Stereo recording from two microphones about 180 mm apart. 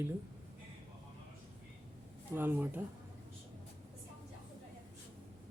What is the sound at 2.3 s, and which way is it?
Speech, 10° right (ahead or behind).